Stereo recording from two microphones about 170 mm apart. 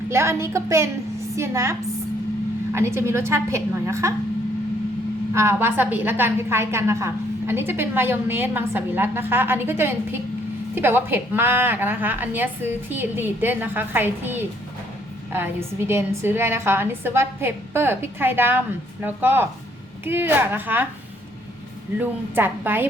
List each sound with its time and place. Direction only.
0.1 s a woman's voice: 15° right (ahead or behind)
2.7 s a woman's voice: 15° right (ahead or behind)
5.3 s a woman's voice: 15° right (ahead or behind)
15.9 s a woman's voice: 15° right (ahead or behind)
21.9 s a woman's voice: 10° right (ahead or behind)